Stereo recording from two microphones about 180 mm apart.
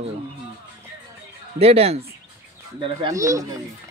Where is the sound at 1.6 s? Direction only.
35° right (ahead or behind).